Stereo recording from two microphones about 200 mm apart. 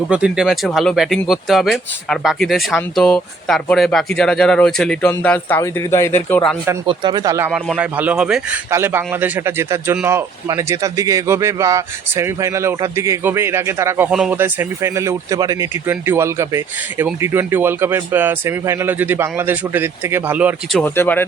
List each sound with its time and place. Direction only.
0.1 s speech: 5° right (ahead or behind); by 6.4 s 10° left (ahead or behind)
6.8 s speech: 20° right (ahead or behind)
20.7 s speech: 10° left (ahead or behind)